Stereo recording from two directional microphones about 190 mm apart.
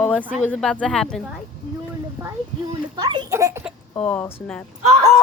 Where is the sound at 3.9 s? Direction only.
5° left (ahead or behind).